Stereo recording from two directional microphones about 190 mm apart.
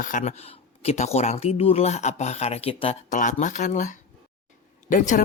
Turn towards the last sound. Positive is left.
turn(degrees=45)  # may be behind; listen again after turning